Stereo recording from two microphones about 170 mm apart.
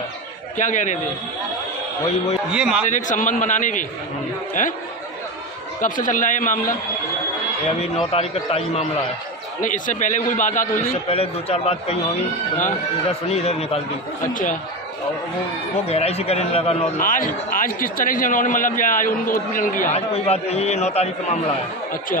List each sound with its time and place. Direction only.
0.6 s a man's voice: 45° left (ahead or behind)
2.5 s a man's voice: 5° right (ahead or behind)
2.9 s a man's voice: 50° left (ahead or behind)
5.8 s a man's voice: 50° left (ahead or behind)
7.8 s a man's voice: 35° left (ahead or behind)
9.6 s a man's voice: 50° left (ahead or behind)
11.1 s a man's voice: 35° left (ahead or behind)
13.3 s a man's voice: 40° left (ahead or behind)
14.2 s a man's voice: 50° left (ahead or behind)
15.8 s a man's voice: 35° left (ahead or behind)
17.0 s a man's voice: 55° left (ahead or behind)
20.1 s a man's voice: 35° left (ahead or behind)